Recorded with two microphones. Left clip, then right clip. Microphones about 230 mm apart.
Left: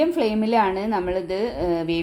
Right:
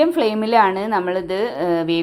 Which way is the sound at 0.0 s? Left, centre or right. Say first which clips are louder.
Right 4 dB; centre.